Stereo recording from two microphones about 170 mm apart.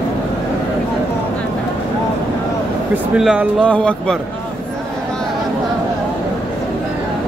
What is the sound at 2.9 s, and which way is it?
Speech, 5° right (ahead or behind).